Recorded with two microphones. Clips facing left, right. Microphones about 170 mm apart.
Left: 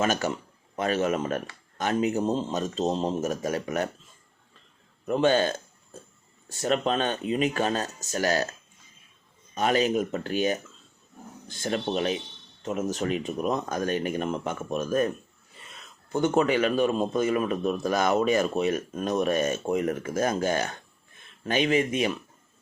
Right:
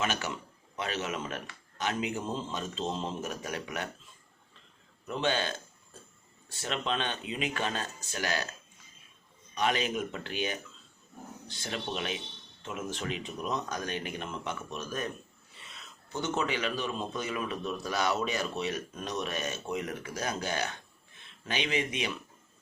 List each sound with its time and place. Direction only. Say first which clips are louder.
0.0 s a man's voice: left 7 dB; 45° left (ahead or behind)
5.0 s a sound: left 9 dB; 45° left (ahead or behind)
6.5 s speech: left 8 dB; 45° left (ahead or behind)
9.6 s a man's voice: left 6 dB; 40° left (ahead or behind)